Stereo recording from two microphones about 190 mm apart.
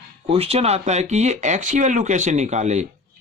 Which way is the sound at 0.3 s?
30° right (ahead or behind).